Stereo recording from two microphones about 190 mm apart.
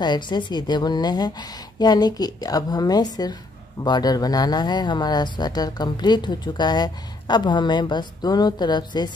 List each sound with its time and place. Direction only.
0.0 s speech: 25° left (ahead or behind)